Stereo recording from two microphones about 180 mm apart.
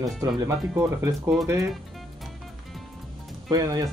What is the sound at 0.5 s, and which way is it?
Speech, 15° right (ahead or behind).